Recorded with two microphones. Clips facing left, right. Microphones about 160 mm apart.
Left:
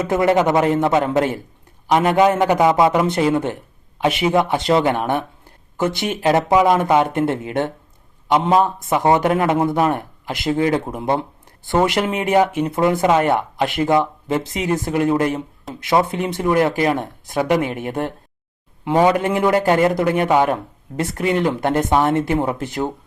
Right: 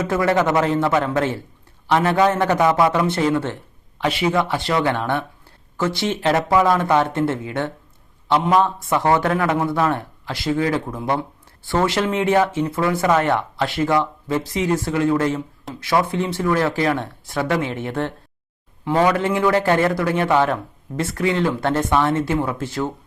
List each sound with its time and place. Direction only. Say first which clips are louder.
0.1 s a man's voice: left 3 dB; 20° left (ahead or behind)